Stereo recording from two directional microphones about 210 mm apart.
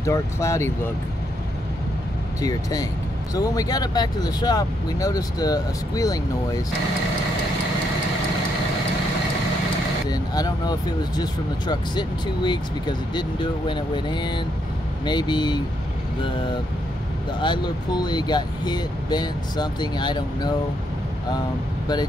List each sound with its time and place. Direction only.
0.0 s speech: 15° left (ahead or behind)
2.4 s speech: 15° left (ahead or behind)
10.0 s speech: 20° left (ahead or behind)
17.4 s speech: 20° left (ahead or behind)